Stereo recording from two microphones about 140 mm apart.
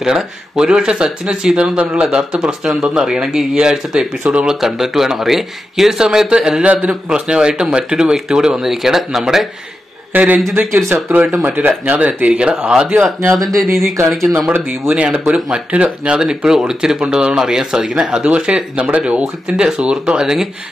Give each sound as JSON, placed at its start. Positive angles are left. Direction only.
{"t": 0.0, "sound": "speech", "side_deg": -5}
{"t": 14.3, "sound": "speech", "side_deg": -10}